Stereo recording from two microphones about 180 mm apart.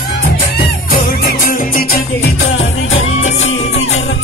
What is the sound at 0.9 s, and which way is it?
Music, 55° left (ahead or behind).